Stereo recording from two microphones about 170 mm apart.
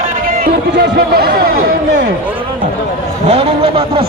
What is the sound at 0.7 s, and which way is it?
Speech, 70° right (ahead or behind).